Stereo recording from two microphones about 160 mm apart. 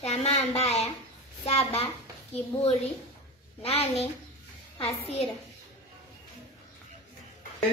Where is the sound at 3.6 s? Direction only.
40° left (ahead or behind).